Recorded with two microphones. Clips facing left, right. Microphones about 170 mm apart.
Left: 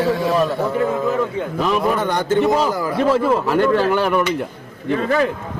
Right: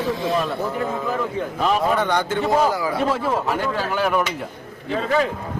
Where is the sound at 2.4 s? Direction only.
50° left (ahead or behind).